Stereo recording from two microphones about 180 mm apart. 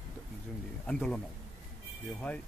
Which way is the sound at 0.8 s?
5° left (ahead or behind).